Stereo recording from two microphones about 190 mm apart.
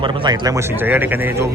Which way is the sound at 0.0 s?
20° right (ahead or behind).